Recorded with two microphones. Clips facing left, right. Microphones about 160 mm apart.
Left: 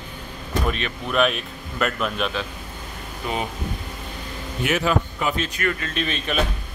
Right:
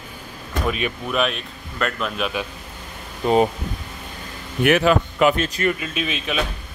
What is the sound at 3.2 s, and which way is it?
Speech, 35° right (ahead or behind).